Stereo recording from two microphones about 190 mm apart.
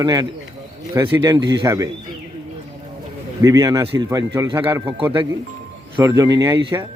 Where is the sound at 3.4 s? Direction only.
15° right (ahead or behind).